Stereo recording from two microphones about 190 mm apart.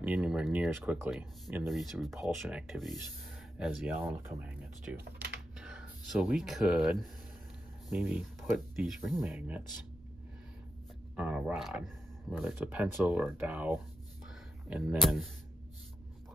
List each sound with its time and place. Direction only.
0.0 s speech: 5° right (ahead or behind)
1.7 s speech: centre (ahead or behind)
4.9 s speech: 60° right (ahead or behind)
5.6 s speech: 5° right (ahead or behind)
11.1 s speech: 5° right (ahead or behind)